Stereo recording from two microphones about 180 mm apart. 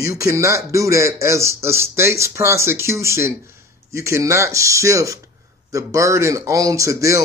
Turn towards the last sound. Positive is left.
turn(degrees=-15)  # may be behind; listen again after turning